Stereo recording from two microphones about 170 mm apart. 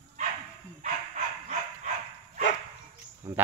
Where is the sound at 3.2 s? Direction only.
15° right (ahead or behind).